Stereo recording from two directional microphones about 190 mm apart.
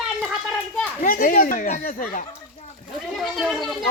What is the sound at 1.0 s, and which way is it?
Speech, 50° left (ahead or behind).